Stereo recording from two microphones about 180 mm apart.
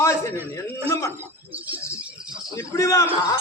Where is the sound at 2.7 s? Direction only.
20° left (ahead or behind).